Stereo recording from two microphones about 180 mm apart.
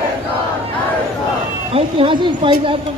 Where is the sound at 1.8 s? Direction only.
30° right (ahead or behind).